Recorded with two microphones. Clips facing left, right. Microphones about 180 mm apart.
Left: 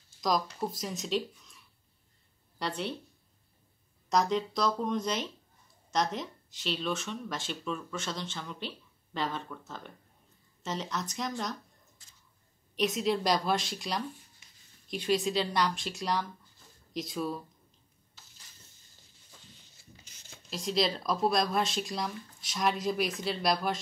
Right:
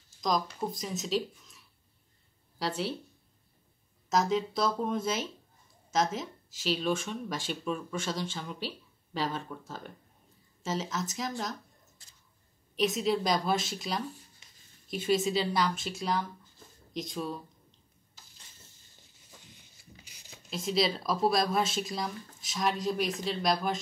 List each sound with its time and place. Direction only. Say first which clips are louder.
0.2 s speech: even; centre (ahead or behind)
2.6 s speech: right 2 dB; 5° right (ahead or behind)
4.1 s speech: even; 5° right (ahead or behind)
9.5 s speech: right 2 dB; 20° right (ahead or behind)
10.6 s speech: right 2 dB; 5° right (ahead or behind)
12.7 s speech: right 1 dB; centre (ahead or behind)
19.3 s a sound: right 1 dB; 15° right (ahead or behind)
20.1 s speech: right 1 dB; 5° right (ahead or behind)